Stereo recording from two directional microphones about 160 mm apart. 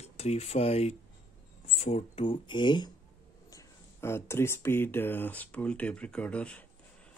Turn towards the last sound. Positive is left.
turn(degrees=10)  # may be behind; listen again after turning